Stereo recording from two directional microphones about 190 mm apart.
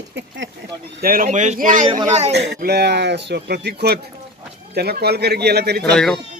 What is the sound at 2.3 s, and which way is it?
A man's voice, 60° right (ahead or behind).